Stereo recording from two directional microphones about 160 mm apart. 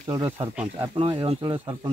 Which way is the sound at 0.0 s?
30° right (ahead or behind).